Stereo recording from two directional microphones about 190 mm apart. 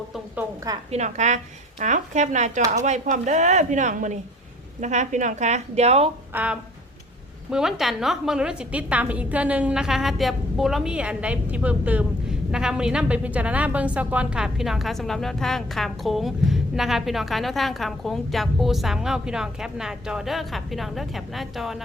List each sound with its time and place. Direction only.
0.9 s speech: 35° right (ahead or behind)
6.3 s a woman's voice: 5° right (ahead or behind)